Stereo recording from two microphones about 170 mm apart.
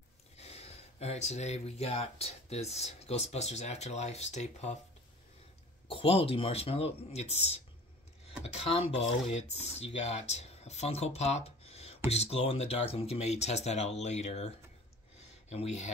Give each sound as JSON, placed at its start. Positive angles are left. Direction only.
{"t": 0.4, "sound": "speech", "side_deg": 35}
{"t": 5.9, "sound": "speech", "side_deg": 35}
{"t": 15.5, "sound": "speech", "side_deg": 40}